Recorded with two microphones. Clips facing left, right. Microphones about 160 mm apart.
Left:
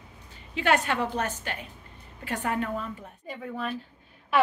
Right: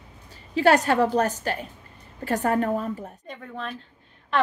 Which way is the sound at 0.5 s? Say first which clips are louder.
Right 6 dB; 35° right (ahead or behind).